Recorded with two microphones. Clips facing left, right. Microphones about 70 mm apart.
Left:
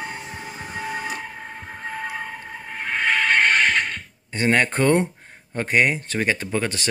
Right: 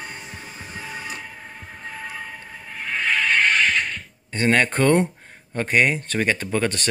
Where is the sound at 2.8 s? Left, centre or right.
Left.